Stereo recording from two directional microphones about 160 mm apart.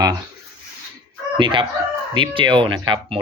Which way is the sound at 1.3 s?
30° right (ahead or behind).